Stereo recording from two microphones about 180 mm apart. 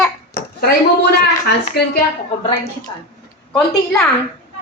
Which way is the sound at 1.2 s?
65° left (ahead or behind).